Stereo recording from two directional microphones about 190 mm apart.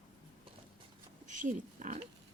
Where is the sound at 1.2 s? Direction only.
40° right (ahead or behind).